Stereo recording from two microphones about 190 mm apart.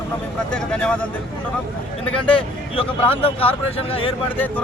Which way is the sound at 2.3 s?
30° left (ahead or behind).